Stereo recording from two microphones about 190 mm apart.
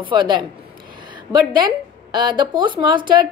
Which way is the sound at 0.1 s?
25° right (ahead or behind).